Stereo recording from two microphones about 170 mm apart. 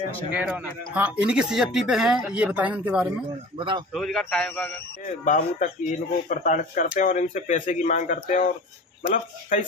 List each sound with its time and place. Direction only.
0.3 s speech: 10° right (ahead or behind)
3.5 s a man's voice: 30° right (ahead or behind)
3.9 s a man's voice: centre (ahead or behind)
5.0 s speech: 50° left (ahead or behind)